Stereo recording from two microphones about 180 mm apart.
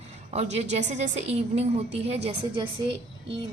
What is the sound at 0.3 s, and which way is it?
A woman's voice, 40° right (ahead or behind).